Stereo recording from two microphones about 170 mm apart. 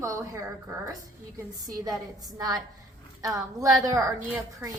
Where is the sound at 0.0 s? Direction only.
15° right (ahead or behind).